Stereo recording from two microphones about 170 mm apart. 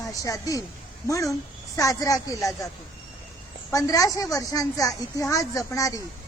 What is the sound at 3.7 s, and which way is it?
A woman's voice, 20° left (ahead or behind).